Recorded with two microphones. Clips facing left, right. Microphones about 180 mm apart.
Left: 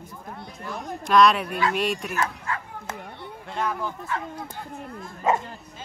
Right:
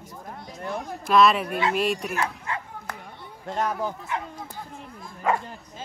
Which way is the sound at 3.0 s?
65° left (ahead or behind).